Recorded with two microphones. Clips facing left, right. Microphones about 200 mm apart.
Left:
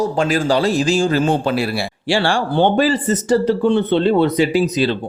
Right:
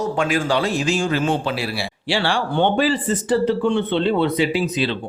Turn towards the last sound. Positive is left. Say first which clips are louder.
# left 5 dB
turn(degrees=40)  # may be behind; listen again after turning